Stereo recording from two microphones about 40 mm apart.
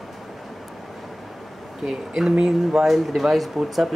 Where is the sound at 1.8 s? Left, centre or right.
Centre.